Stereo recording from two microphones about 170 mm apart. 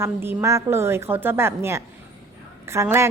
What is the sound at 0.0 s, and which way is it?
A woman's voice, 15° right (ahead or behind).